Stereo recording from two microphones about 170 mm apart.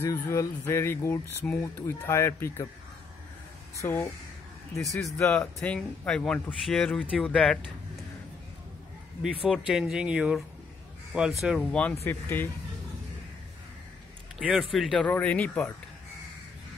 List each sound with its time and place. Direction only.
0.0 s speech: 15° left (ahead or behind)
3.8 s speech: 15° left (ahead or behind)
4.7 s speech: centre (ahead or behind)
9.2 s speech: 5° right (ahead or behind); by 12.4 s 10° left (ahead or behind)
14.4 s speech: centre (ahead or behind)